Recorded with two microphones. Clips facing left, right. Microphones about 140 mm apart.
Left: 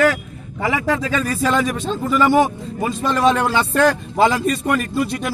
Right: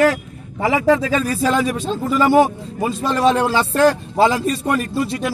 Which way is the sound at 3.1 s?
35° right (ahead or behind).